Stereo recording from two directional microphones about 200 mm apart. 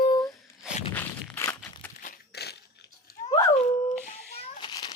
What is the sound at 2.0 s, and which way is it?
Crunch, 55° left (ahead or behind).